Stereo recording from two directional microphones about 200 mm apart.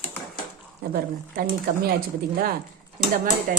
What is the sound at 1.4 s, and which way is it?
Speech, 45° right (ahead or behind).